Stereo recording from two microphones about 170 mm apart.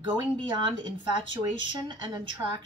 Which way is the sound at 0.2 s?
30° right (ahead or behind).